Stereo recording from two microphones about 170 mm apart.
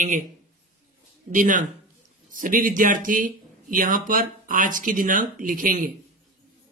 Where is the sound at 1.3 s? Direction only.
50° right (ahead or behind).